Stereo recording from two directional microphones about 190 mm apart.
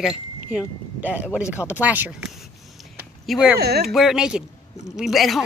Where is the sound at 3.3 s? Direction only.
5° right (ahead or behind).